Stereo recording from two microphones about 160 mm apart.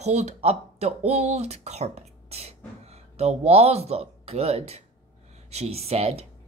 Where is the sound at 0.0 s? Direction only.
45° right (ahead or behind).